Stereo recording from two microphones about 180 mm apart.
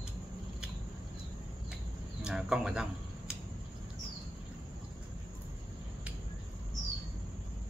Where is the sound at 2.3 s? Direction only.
5° right (ahead or behind).